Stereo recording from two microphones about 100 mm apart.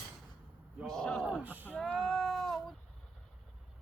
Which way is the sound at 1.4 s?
15° right (ahead or behind).